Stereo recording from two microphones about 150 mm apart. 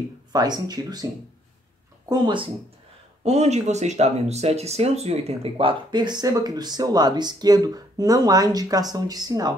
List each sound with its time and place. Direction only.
0.3 s speech: 25° right (ahead or behind)
2.0 s speech: 30° right (ahead or behind)
3.3 s speech: 45° right (ahead or behind); by 9.6 s 25° right (ahead or behind)